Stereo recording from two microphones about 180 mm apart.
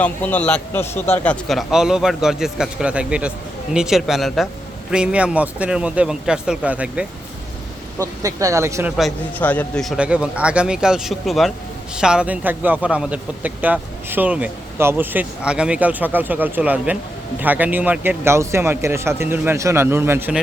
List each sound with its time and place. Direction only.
0.0 s a man's voice: 10° left (ahead or behind)
7.9 s a man's voice: 15° right (ahead or behind)
9.0 s a man's voice: 5° left (ahead or behind); by 20.4 s 10° right (ahead or behind)